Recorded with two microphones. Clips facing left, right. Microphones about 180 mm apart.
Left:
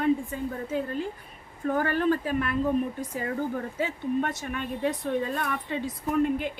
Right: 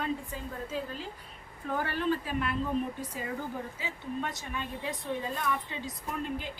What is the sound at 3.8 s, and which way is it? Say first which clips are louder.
A woman's voice: left 11 dB; 60° left (ahead or behind).